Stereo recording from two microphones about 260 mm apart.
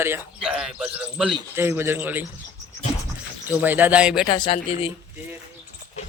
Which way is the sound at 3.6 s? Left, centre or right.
Centre.